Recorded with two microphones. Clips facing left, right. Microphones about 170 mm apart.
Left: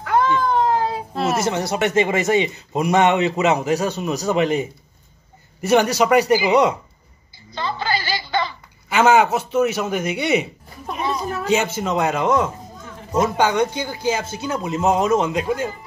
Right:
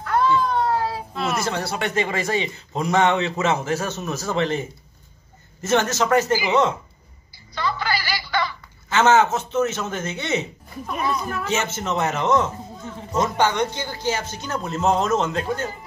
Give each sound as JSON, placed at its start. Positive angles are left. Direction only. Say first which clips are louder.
{"t": 0.0, "sound": "a sound", "louder": "left 1 dB", "side_deg": 15}
{"t": 1.3, "sound": "speech", "louder": "left 4 dB", "side_deg": 20}
{"t": 7.5, "sound": "a sound", "louder": "left 1 dB", "side_deg": 25}
{"t": 8.8, "sound": "speech", "louder": "left 2 dB", "side_deg": 10}
{"t": 11.0, "sound": "a man's voice", "louder": "left 1 dB", "side_deg": 25}
{"t": 11.4, "sound": "speech", "louder": "left 7 dB", "side_deg": 15}